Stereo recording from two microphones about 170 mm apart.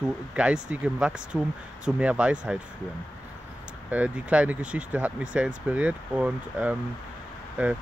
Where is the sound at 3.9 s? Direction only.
10° right (ahead or behind).